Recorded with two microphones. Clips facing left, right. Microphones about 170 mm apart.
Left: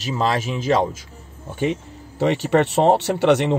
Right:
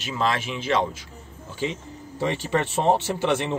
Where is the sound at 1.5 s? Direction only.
60° left (ahead or behind).